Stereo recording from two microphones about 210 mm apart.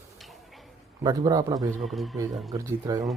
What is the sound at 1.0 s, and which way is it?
Speech, 20° right (ahead or behind).